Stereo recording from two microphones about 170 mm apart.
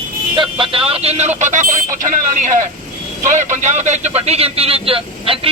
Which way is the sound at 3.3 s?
45° right (ahead or behind).